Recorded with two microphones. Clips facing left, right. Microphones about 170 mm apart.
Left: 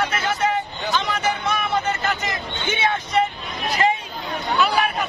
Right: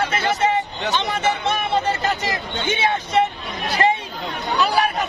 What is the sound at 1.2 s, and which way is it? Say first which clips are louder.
Music: right 2 dB; 25° right (ahead or behind).